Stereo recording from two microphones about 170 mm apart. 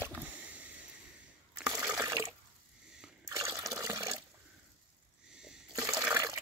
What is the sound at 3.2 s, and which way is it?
Water, 20° right (ahead or behind).